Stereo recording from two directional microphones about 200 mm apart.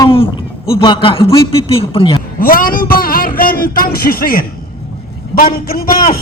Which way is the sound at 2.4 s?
45° left (ahead or behind).